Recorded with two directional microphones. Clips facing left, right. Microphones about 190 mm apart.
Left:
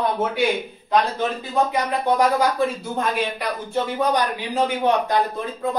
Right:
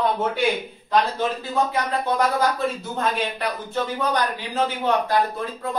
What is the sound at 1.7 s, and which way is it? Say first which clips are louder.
Speech: left 2 dB; 15° left (ahead or behind).